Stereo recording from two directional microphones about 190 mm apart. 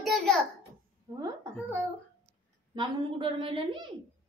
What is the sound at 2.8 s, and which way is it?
A woman's voice, 25° right (ahead or behind).